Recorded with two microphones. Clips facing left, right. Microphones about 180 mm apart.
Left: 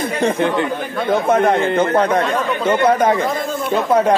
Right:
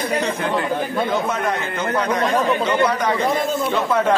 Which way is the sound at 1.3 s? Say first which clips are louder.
Left 9 dB; 50° left (ahead or behind).